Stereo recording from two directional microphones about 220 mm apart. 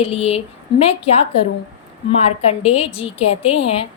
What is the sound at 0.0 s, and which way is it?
A woman's voice, 25° left (ahead or behind).